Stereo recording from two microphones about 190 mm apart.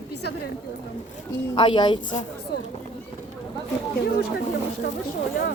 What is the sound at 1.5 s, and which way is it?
Speech, 25° left (ahead or behind).